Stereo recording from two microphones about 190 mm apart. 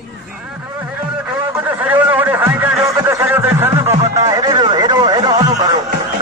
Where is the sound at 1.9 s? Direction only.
10° right (ahead or behind).